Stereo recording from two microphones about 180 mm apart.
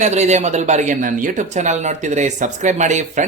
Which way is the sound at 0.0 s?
40° right (ahead or behind).